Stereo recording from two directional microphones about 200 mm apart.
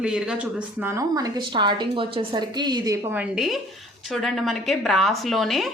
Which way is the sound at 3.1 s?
5° right (ahead or behind).